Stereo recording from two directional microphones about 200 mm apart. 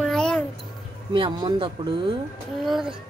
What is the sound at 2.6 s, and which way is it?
Speech, centre (ahead or behind).